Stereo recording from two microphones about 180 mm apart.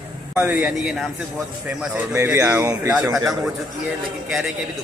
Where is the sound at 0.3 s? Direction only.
5° right (ahead or behind).